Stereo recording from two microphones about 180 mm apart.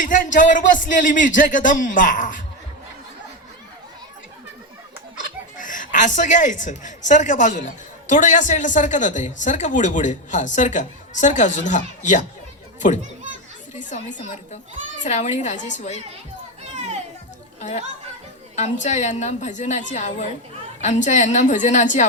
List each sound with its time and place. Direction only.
0.0 s speech: 45° left (ahead or behind)
5.5 s speech: 45° left (ahead or behind)
13.7 s a woman's voice: 45° left (ahead or behind)
17.6 s a woman's voice: 40° left (ahead or behind)